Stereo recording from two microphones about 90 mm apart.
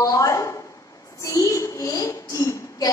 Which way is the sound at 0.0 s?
40° left (ahead or behind).